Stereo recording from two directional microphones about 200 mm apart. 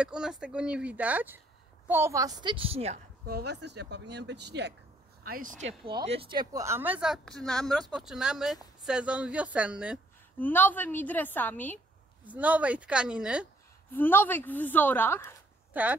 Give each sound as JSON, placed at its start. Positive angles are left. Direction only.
{"t": 0.0, "sound": "a woman's voice", "side_deg": -5}
{"t": 3.3, "sound": "speech", "side_deg": -55}
{"t": 5.2, "sound": "speech", "side_deg": -45}
{"t": 5.7, "sound": "speech", "side_deg": -30}
{"t": 10.4, "sound": "a woman's voice", "side_deg": 10}
{"t": 12.3, "sound": "speech", "side_deg": -5}
{"t": 13.9, "sound": "a woman's voice", "side_deg": 10}
{"t": 15.7, "sound": "speech", "side_deg": -10}